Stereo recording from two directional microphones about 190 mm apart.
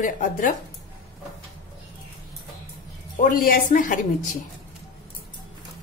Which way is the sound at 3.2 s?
50° left (ahead or behind).